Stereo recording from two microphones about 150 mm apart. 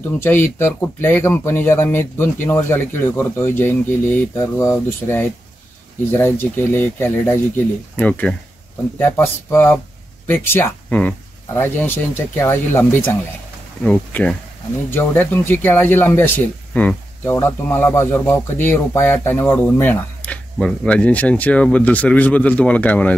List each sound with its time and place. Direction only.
0.2 s speech: 15° left (ahead or behind)